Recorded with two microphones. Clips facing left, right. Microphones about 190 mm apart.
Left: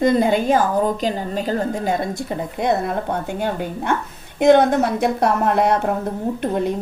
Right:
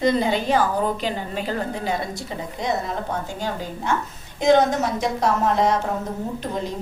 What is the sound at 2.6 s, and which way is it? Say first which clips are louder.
A woman's voice: left 5 dB; 60° left (ahead or behind).